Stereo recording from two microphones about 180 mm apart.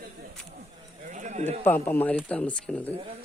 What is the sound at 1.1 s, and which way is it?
Speech, 40° right (ahead or behind).